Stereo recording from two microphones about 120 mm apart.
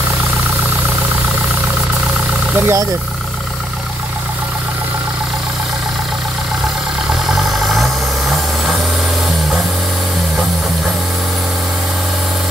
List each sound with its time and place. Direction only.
2.6 s speech: 25° right (ahead or behind)
7.2 s vehicle: centre (ahead or behind)